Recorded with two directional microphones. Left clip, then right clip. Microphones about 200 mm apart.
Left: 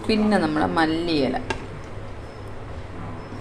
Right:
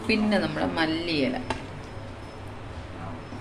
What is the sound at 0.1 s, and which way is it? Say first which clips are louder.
A woman's voice: left 4 dB; 15° left (ahead or behind).